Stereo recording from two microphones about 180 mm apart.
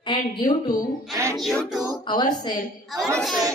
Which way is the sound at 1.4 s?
Centre (ahead or behind).